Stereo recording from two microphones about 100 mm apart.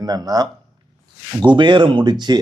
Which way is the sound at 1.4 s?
50° right (ahead or behind).